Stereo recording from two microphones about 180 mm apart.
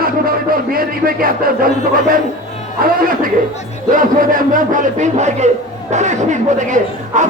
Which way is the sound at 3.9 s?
50° right (ahead or behind).